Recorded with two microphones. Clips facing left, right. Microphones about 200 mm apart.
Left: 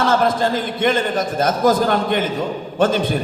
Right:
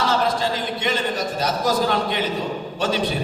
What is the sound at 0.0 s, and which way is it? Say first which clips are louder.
A man's voice: left 4 dB; 50° left (ahead or behind).